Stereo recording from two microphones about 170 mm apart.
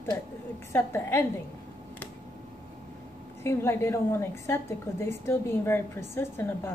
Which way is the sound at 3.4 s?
15° left (ahead or behind).